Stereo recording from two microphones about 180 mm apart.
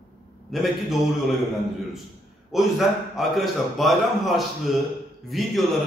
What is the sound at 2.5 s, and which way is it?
Speech, centre (ahead or behind).